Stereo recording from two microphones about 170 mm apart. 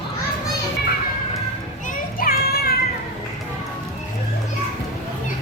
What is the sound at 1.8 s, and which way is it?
Children playing, 55° left (ahead or behind).